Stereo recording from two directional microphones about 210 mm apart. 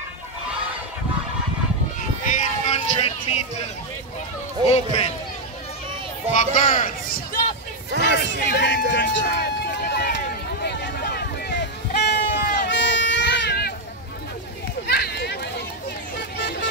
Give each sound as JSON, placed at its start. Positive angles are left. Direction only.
{"t": 2.0, "sound": "a sound", "side_deg": 35}
{"t": 4.6, "sound": "speech", "side_deg": 30}
{"t": 6.3, "sound": "speech", "side_deg": 40}
{"t": 8.0, "sound": "run", "side_deg": 55}
{"t": 14.9, "sound": "run", "side_deg": 50}
{"t": 16.3, "sound": "vehicle", "side_deg": 55}